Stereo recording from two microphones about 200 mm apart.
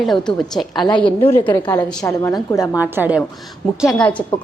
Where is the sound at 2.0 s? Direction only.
15° left (ahead or behind).